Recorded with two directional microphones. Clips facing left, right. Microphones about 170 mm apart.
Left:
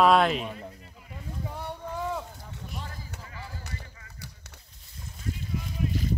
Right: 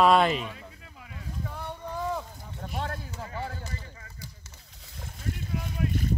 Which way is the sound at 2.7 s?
70° right (ahead or behind).